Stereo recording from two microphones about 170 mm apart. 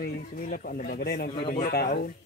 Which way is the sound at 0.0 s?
55° left (ahead or behind).